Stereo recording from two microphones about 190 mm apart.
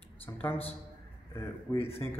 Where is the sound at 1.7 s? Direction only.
15° left (ahead or behind).